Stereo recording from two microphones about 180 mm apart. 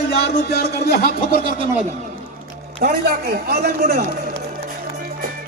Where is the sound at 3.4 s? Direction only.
60° right (ahead or behind).